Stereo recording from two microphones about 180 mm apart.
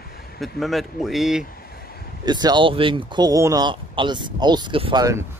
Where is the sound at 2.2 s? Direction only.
25° right (ahead or behind).